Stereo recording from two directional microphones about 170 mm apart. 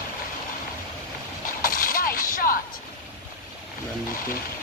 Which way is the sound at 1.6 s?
55° left (ahead or behind).